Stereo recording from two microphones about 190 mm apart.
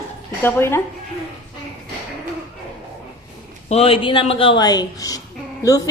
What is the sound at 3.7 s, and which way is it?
A woman's voice, 30° left (ahead or behind).